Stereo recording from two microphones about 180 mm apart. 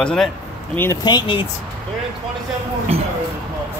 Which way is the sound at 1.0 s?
25° left (ahead or behind).